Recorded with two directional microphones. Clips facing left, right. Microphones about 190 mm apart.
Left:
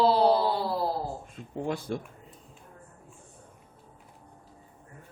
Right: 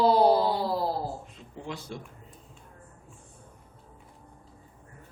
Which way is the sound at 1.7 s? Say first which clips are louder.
Left 6 dB; 55° left (ahead or behind).